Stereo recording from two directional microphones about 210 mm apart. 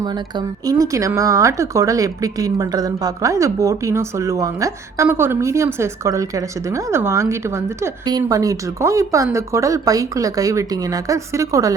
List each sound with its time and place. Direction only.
0.0 s speech: 20° right (ahead or behind)